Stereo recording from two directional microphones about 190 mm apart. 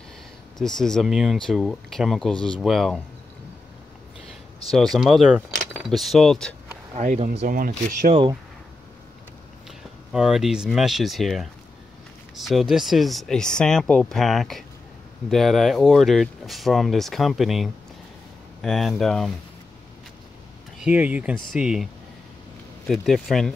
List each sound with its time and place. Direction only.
0.6 s speech: 5° left (ahead or behind)
4.6 s speech: centre (ahead or behind)
7.0 s speech: 40° right (ahead or behind)
8.1 s speech: 25° right (ahead or behind)
9.7 s speech: 5° right (ahead or behind)
20.8 s speech: 10° right (ahead or behind)
22.8 s speech: centre (ahead or behind)